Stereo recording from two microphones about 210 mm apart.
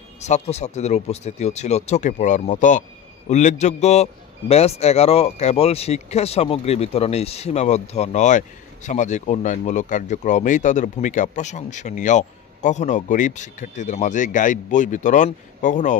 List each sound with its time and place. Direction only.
0.2 s a man's voice: 30° left (ahead or behind)